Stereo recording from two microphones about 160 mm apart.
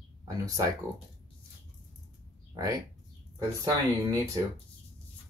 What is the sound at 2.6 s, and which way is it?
Speech, 20° right (ahead or behind).